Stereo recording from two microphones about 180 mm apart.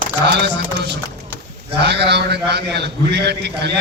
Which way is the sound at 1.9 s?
70° right (ahead or behind).